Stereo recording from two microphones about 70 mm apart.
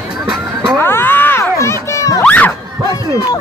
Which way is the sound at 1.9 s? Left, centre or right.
Left.